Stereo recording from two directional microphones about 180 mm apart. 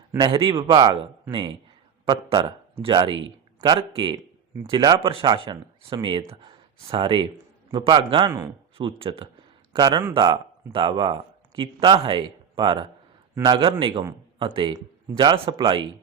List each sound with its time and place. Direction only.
0.3 s speech: 30° right (ahead or behind)
2.8 s speech: 25° right (ahead or behind)